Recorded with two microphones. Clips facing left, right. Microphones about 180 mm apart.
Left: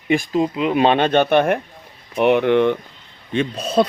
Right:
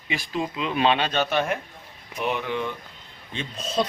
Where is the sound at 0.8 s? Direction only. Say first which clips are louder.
Left 6 dB; 50° left (ahead or behind).